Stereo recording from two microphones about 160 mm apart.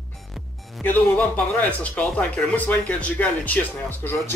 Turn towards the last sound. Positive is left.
turn(degrees=10)  # may be behind; listen again after turning